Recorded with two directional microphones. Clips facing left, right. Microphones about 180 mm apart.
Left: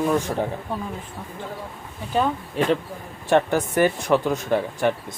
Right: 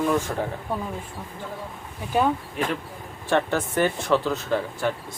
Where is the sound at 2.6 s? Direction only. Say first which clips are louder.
Left 10 dB; 30° left (ahead or behind).